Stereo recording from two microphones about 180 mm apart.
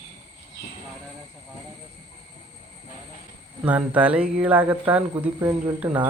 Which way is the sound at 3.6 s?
10° right (ahead or behind).